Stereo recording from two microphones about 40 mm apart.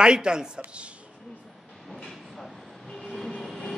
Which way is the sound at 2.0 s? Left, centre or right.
Centre.